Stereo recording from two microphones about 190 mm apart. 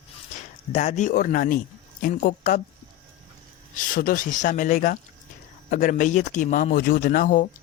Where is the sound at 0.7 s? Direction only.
35° left (ahead or behind).